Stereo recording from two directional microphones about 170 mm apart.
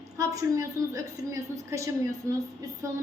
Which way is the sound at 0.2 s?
20° right (ahead or behind).